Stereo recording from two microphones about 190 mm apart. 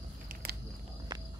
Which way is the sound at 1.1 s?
25° right (ahead or behind).